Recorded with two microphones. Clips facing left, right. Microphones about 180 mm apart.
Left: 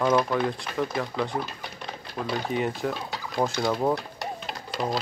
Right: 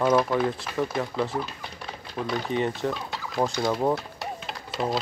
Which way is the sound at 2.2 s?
5° left (ahead or behind).